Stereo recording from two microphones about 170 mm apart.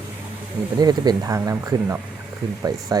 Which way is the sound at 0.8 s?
25° right (ahead or behind).